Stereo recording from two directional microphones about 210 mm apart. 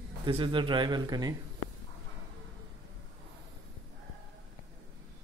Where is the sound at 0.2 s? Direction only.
25° right (ahead or behind).